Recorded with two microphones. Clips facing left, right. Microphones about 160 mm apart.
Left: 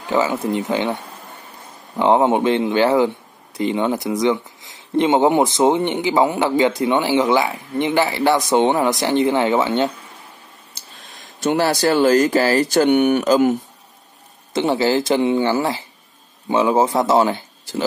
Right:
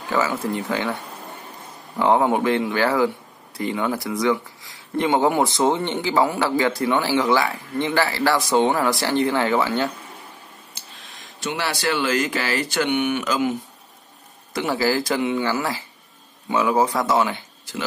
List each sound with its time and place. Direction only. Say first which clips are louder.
0.1 s speech: left 4 dB; 20° left (ahead or behind)
2.0 s speech: left 3 dB; 20° left (ahead or behind)
11.4 s speech: left 8 dB; 40° left (ahead or behind)
14.5 s speech: left 4 dB; 25° left (ahead or behind)